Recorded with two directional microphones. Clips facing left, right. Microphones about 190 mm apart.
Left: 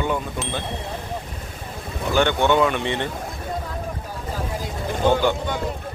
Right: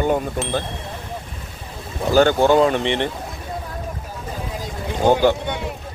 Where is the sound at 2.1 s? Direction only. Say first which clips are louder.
Right 4 dB; 40° right (ahead or behind).